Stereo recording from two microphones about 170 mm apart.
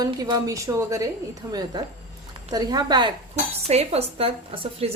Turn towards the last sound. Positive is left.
turn(degrees=-35)  # may be behind; listen again after turning